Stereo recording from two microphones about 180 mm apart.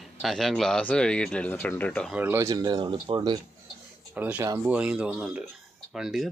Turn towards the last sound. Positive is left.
turn(degrees=0)  # may be behind; listen again after turning